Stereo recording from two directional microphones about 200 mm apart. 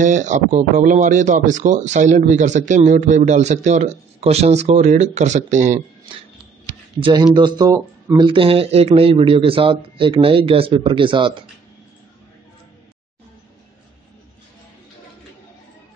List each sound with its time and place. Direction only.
0.0 s speech: 35° right (ahead or behind)
7.0 s speech: 20° right (ahead or behind)